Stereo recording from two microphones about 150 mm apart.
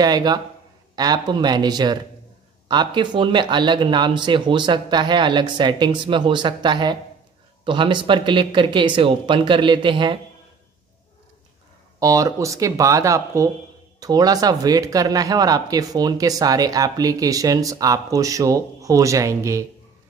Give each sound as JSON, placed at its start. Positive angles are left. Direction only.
{"t": 0.0, "sound": "speech", "side_deg": -25}
{"t": 12.0, "sound": "speech", "side_deg": -20}